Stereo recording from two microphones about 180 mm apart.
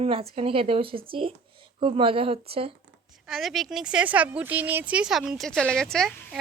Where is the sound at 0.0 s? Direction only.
35° right (ahead or behind).